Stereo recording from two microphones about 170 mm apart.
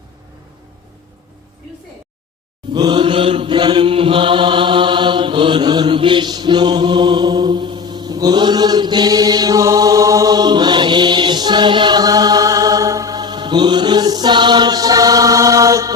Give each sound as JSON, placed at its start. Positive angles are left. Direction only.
{"t": 2.7, "sound": "chant", "side_deg": -25}